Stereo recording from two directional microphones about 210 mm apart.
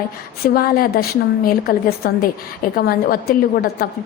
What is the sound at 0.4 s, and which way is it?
A woman's voice, 45° left (ahead or behind).